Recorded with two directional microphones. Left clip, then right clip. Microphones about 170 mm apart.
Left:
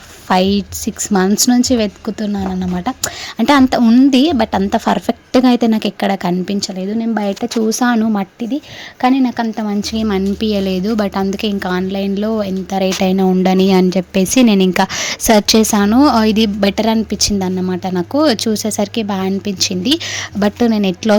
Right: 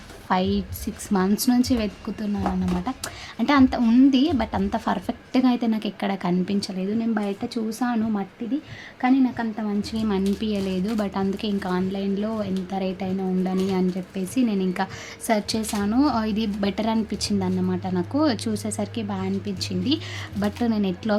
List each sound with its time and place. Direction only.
0.3 s a woman's voice: 45° left (ahead or behind)